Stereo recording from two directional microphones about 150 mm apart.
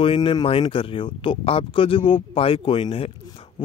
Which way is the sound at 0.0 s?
35° left (ahead or behind).